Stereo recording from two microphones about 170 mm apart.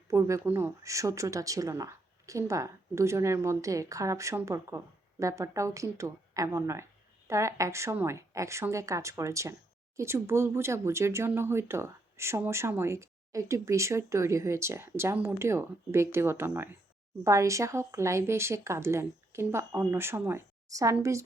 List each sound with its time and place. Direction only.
0.1 s speech: 20° right (ahead or behind)